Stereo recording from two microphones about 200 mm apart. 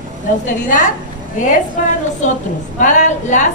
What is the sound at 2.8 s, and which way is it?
Speech, 40° left (ahead or behind).